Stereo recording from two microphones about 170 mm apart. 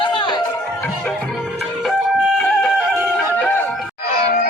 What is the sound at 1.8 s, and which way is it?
Chicken, centre (ahead or behind).